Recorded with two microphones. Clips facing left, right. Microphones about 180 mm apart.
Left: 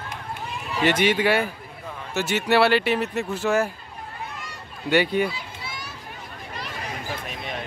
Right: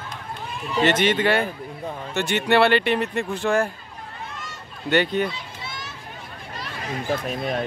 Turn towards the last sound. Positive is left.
turn(degrees=-45)  # may be behind; listen again after turning